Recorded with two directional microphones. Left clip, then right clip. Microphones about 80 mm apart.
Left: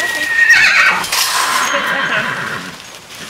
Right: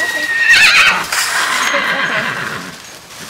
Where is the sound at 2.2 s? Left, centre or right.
Right.